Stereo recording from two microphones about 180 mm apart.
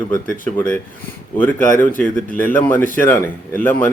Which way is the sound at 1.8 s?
10° left (ahead or behind).